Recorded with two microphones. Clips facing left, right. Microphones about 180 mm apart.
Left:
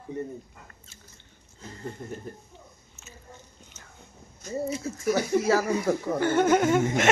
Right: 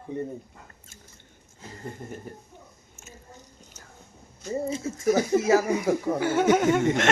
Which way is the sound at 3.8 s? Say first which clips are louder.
Right 2 dB; 40° right (ahead or behind).